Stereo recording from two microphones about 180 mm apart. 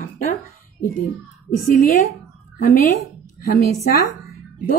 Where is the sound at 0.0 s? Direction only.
45° left (ahead or behind).